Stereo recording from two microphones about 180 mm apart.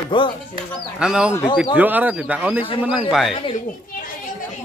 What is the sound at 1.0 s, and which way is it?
Speech, 5° right (ahead or behind).